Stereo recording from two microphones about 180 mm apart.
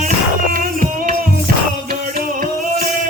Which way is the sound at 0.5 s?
50° right (ahead or behind).